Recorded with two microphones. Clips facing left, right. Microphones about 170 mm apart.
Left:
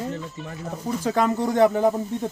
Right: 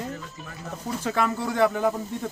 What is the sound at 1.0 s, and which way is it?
Speech, 20° left (ahead or behind).